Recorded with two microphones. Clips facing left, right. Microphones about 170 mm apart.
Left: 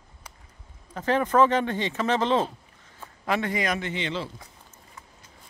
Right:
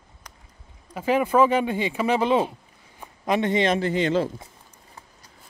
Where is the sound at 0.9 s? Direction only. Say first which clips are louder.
Right 2 dB; 10° right (ahead or behind); by 4.3 s 45° right (ahead or behind).